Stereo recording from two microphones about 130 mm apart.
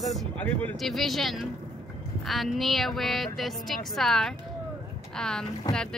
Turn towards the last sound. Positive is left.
turn(degrees=30)  # may be behind; listen again after turning